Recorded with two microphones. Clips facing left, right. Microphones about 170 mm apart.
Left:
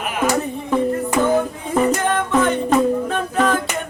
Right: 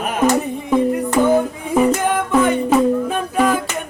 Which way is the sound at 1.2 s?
5° right (ahead or behind).